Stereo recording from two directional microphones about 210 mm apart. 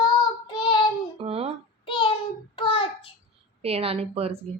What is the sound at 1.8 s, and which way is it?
Child singing, 25° left (ahead or behind).